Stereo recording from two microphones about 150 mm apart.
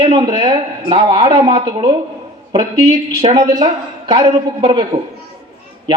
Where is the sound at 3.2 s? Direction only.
40° right (ahead or behind).